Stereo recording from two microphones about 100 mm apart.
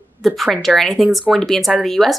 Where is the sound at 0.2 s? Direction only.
Centre (ahead or behind).